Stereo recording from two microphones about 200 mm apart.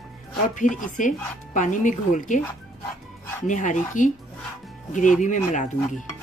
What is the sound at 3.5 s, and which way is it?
Speech, 40° left (ahead or behind).